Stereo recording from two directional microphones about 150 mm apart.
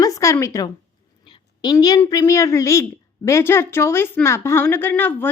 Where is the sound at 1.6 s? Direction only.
25° left (ahead or behind).